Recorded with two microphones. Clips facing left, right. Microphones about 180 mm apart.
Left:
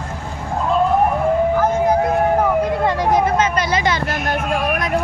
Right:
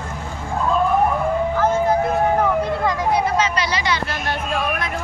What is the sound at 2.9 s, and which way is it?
Vehicle, 40° left (ahead or behind).